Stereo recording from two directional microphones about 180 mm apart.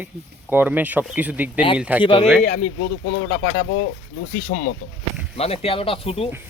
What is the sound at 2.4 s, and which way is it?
Speech, 45° left (ahead or behind).